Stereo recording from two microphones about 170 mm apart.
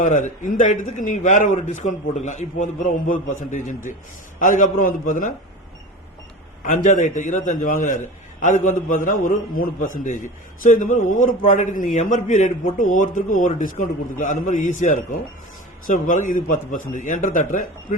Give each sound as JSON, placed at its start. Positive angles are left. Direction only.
{"t": 0.0, "sound": "a man's voice", "side_deg": 45}
{"t": 6.7, "sound": "a man's voice", "side_deg": 50}